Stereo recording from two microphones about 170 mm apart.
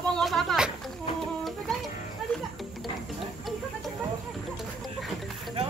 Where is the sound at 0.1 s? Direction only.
Centre (ahead or behind).